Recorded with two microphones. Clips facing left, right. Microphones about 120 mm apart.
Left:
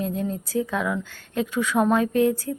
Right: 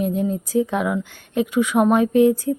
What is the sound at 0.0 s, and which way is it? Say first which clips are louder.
A woman's voice: right 5 dB; 15° right (ahead or behind).